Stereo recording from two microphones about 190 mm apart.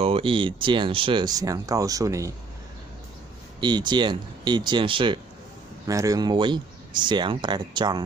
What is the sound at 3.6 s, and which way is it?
Speech, 25° right (ahead or behind).